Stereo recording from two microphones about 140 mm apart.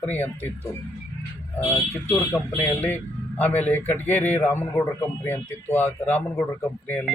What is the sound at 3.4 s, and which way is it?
Speech, 10° left (ahead or behind).